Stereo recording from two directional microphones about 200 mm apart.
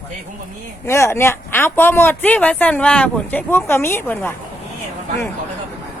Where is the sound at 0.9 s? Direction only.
15° left (ahead or behind).